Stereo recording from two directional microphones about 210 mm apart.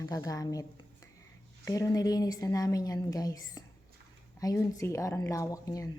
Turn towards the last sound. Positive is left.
turn(degrees=15)  # may be behind; listen again after turning